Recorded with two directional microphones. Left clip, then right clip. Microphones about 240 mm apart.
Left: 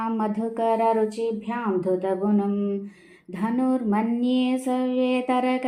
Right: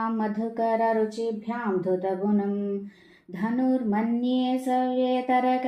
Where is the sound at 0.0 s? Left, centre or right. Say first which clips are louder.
Left 2 dB; left.